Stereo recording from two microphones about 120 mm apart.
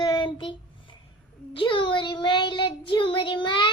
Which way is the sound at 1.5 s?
45° left (ahead or behind).